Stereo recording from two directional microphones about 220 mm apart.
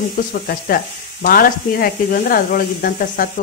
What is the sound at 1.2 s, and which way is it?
Speech, 40° left (ahead or behind).